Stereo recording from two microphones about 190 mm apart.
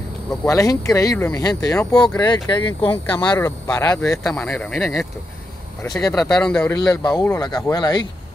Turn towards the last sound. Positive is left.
turn(degrees=20)  # may be behind; listen again after turning